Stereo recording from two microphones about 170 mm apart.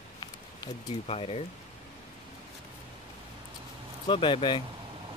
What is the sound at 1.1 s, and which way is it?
Speech, 35° left (ahead or behind).